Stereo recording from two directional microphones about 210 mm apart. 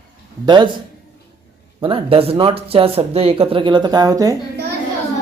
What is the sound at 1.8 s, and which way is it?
Speech, 25° right (ahead or behind).